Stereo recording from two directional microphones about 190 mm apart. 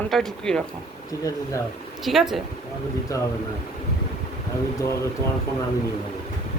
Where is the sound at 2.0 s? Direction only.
Centre (ahead or behind).